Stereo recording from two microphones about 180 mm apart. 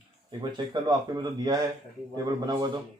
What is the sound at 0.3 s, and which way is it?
Speech, 25° right (ahead or behind).